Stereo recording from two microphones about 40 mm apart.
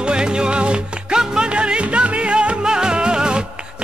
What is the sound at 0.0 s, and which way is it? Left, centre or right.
Music, right.